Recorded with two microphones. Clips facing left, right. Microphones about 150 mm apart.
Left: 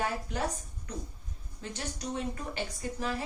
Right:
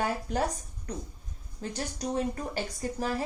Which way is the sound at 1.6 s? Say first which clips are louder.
Right 4 dB; 40° right (ahead or behind).